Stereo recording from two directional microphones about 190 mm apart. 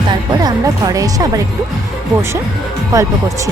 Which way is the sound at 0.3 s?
20° right (ahead or behind).